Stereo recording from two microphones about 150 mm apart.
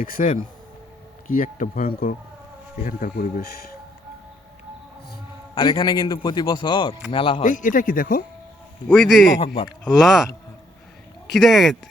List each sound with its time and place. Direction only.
0.0 s speech: 65° left (ahead or behind)
1.4 s speech: 60° left (ahead or behind); by 3.6 s 80° left
5.5 s a man's voice: 30° left (ahead or behind)
7.4 s speech: 60° left (ahead or behind)
8.9 s speech: centre (ahead or behind)